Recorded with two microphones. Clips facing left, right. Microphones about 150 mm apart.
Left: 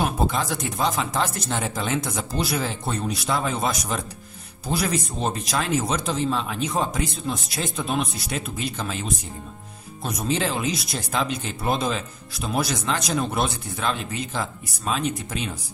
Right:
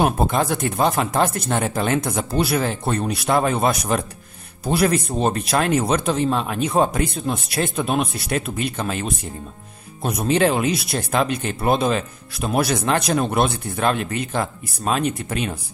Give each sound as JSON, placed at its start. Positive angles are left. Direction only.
{"t": 0.0, "sound": "speech", "side_deg": -55}